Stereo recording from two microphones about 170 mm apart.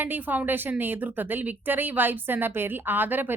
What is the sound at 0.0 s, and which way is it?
A woman's voice, 10° right (ahead or behind).